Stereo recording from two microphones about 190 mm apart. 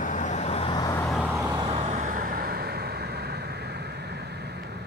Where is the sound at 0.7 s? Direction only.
15° left (ahead or behind).